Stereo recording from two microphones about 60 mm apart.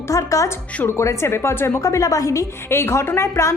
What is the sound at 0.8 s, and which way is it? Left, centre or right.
Speech, left.